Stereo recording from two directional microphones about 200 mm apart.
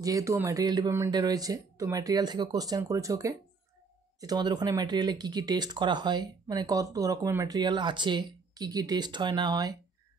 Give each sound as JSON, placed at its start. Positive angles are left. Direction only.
{"t": 0.0, "sound": "speech", "side_deg": -15}